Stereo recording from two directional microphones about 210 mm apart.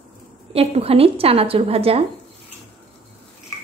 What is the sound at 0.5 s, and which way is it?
A woman's voice, 30° right (ahead or behind).